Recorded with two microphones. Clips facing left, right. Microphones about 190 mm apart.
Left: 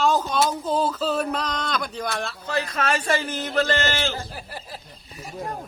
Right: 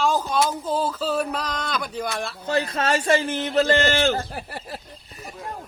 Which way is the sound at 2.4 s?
30° right (ahead or behind).